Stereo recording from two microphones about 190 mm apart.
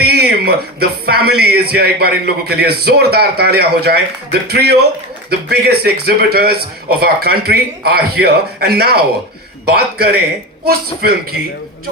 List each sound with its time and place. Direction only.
0.0 s a man's voice: 55° right (ahead or behind)